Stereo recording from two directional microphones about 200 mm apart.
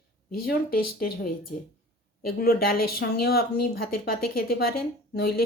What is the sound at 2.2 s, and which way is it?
Speech, 50° left (ahead or behind).